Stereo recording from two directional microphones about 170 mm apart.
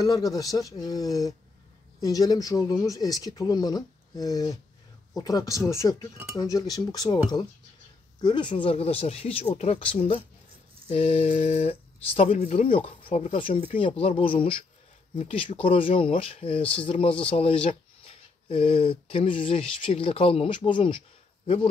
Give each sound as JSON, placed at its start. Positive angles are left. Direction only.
{"t": 0.0, "sound": "speech", "side_deg": 20}